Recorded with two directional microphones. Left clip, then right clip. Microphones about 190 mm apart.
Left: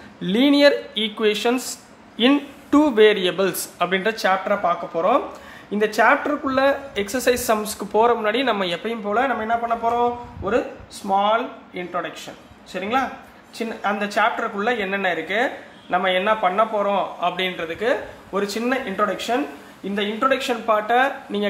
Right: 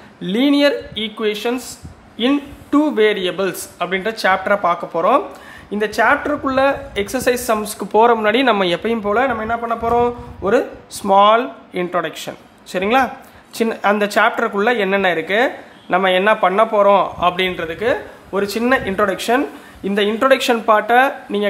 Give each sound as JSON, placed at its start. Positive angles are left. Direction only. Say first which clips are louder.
{"t": 0.2, "sound": "a man's voice", "louder": "right 1 dB", "side_deg": 0}
{"t": 4.3, "sound": "a woman's voice", "louder": "right 6 dB", "side_deg": -20}
{"t": 5.7, "sound": "a man's voice", "louder": "right 2 dB", "side_deg": 0}
{"t": 6.4, "sound": "a woman's voice", "louder": "right 3 dB", "side_deg": -15}